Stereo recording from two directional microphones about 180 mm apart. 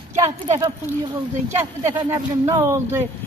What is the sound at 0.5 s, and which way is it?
Speech, 20° right (ahead or behind).